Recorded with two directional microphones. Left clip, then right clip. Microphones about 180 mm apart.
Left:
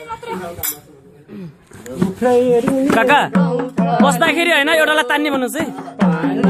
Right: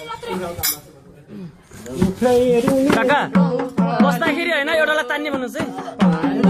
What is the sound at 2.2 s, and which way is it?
Music, 30° left (ahead or behind).